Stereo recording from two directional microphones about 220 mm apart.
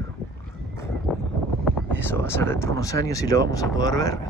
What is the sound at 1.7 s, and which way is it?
A man's voice, 10° left (ahead or behind).